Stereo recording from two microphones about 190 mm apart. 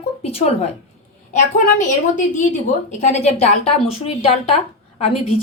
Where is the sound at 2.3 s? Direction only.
40° left (ahead or behind).